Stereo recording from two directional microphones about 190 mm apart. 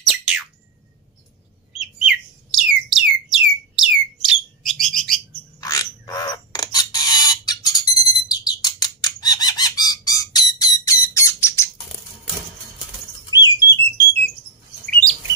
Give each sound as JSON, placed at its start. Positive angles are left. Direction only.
{"t": 1.7, "sound": "bird", "side_deg": -5}
{"t": 5.6, "sound": "bird", "side_deg": 20}
{"t": 13.3, "sound": "bird", "side_deg": 20}